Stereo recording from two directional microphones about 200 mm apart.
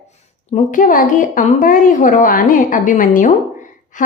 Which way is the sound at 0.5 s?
40° left (ahead or behind).